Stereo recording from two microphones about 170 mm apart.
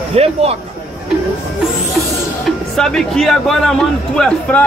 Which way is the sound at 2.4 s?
5° left (ahead or behind).